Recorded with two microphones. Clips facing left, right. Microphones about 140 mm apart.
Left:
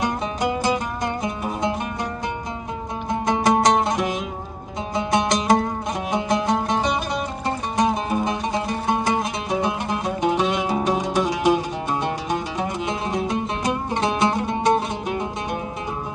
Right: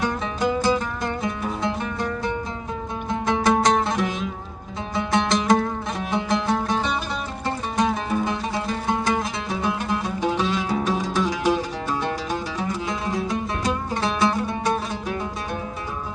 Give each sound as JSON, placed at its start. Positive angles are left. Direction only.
{"t": 0.0, "sound": "music", "side_deg": 15}